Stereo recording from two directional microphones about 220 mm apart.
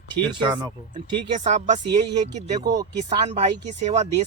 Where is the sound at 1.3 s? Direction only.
35° right (ahead or behind).